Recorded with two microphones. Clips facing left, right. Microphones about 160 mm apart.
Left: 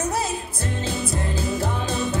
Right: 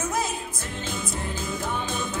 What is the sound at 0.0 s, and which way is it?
Music, 35° left (ahead or behind).